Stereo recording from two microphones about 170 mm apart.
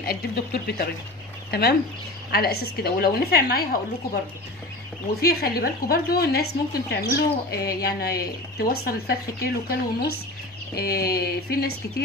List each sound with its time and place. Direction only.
0.0 s speech: 60° left (ahead or behind)
5.2 s speech: 65° left (ahead or behind)